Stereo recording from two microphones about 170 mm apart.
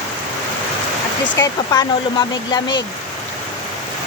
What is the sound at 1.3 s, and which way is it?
Speech, 20° left (ahead or behind).